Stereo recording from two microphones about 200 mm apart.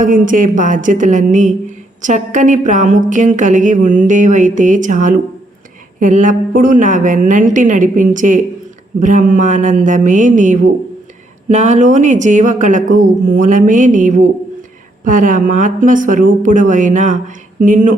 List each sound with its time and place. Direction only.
0.0 s a woman's voice: 40° right (ahead or behind)